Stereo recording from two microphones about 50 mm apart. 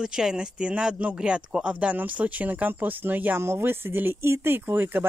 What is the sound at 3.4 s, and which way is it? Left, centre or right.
Speech, right.